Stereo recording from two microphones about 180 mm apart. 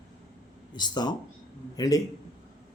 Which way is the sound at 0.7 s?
25° left (ahead or behind).